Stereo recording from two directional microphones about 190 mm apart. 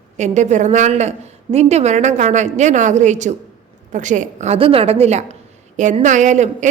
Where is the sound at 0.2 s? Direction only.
40° right (ahead or behind).